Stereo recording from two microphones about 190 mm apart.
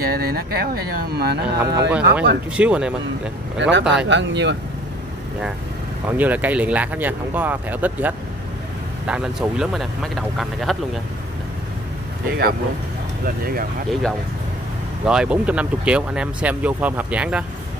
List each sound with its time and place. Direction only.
0.0 s speech: 55° right (ahead or behind)
1.6 s speech: 10° right (ahead or behind)
4.1 s speech: 70° right (ahead or behind)
6.0 s speech: 10° right (ahead or behind)
12.3 s speech: 50° right (ahead or behind)
15.0 s speech: 5° right (ahead or behind)